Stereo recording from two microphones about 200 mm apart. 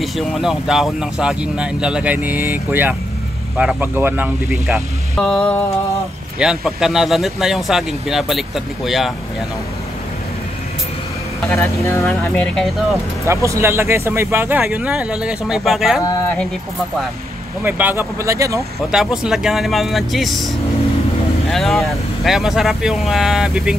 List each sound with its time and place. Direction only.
0.0 s speech: centre (ahead or behind)
5.1 s music: centre (ahead or behind)
6.4 s speech: centre (ahead or behind)
11.4 s speech: 10° left (ahead or behind)
13.2 s speech: 15° right (ahead or behind)
16.0 s speech: 15° left (ahead or behind)
17.6 s speech: 10° right (ahead or behind)
18.9 s speech: 5° right (ahead or behind)